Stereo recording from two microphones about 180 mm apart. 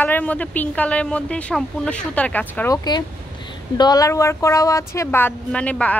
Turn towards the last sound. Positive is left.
turn(degrees=5)  # may be behind; listen again after turning